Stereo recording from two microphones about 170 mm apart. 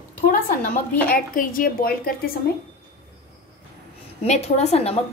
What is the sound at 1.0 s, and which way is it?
A woman's voice, 60° left (ahead or behind).